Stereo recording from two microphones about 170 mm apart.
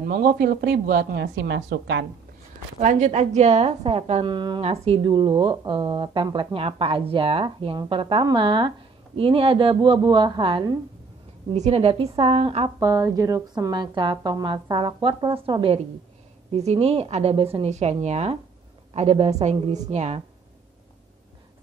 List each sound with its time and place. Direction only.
0.0 s speech: 65° right (ahead or behind); by 2.0 s 85° right
2.8 s a woman's voice: 45° right (ahead or behind); by 10.7 s 25° right (ahead or behind)
11.5 s a woman's voice: 40° right (ahead or behind)
12.7 s a woman's voice: 20° right (ahead or behind); by 20.2 s 40° right (ahead or behind)